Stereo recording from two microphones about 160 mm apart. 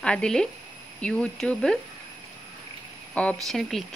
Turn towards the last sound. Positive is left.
turn(degrees=0)  # may be behind; listen again after turning